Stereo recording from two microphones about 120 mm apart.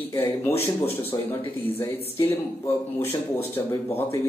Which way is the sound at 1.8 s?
20° left (ahead or behind).